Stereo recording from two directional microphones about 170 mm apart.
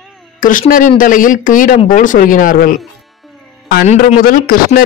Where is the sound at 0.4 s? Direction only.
55° left (ahead or behind).